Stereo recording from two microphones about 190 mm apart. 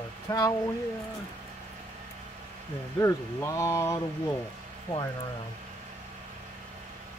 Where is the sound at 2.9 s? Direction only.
15° left (ahead or behind).